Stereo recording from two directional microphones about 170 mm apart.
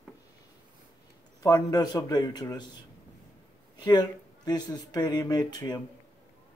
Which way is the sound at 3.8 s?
25° left (ahead or behind).